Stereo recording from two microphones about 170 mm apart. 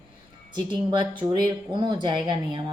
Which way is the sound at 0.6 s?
25° right (ahead or behind).